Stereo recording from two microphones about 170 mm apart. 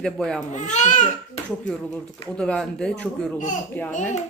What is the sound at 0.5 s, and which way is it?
Speech, 45° left (ahead or behind).